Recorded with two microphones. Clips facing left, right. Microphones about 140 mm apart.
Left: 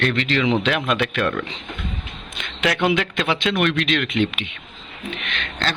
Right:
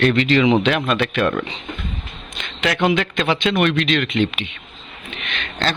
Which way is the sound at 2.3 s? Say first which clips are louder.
Even; 5° left (ahead or behind).